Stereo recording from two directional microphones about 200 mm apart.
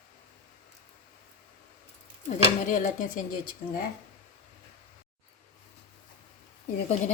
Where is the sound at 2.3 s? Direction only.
40° left (ahead or behind).